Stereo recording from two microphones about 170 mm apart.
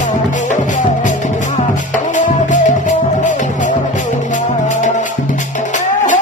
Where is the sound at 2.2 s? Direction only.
50° left (ahead or behind).